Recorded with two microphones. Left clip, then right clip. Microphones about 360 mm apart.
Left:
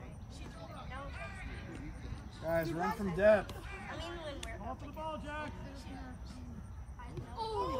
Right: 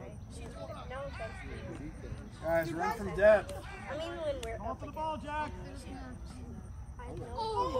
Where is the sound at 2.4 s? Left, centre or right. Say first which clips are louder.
Right 3 dB; right.